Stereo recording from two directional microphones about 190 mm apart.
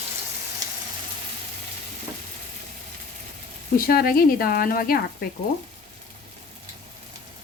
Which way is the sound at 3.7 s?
50° left (ahead or behind).